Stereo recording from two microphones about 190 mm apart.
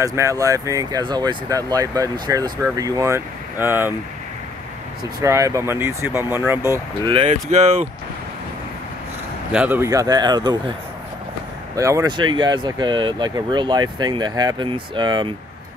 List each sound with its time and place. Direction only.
0.0 s speech: 15° right (ahead or behind)
5.2 s speech: 15° right (ahead or behind)
7.1 s speech: 30° right (ahead or behind)
9.5 s speech: 5° right (ahead or behind)
11.7 s speech: 15° right (ahead or behind)